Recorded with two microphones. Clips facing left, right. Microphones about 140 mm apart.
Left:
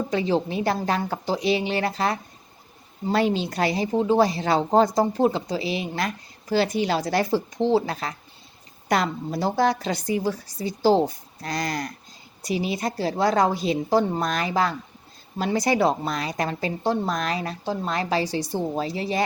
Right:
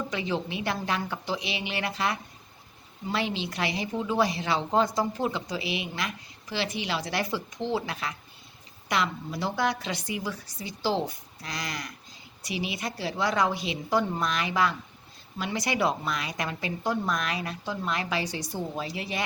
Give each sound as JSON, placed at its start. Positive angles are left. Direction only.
{"t": 0.1, "sound": "a woman's voice", "side_deg": 35}